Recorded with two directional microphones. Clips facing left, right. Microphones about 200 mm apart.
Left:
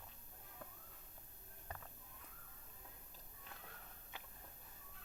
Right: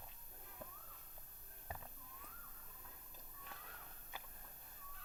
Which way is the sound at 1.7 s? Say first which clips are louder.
Right 1 dB; 10° right (ahead or behind).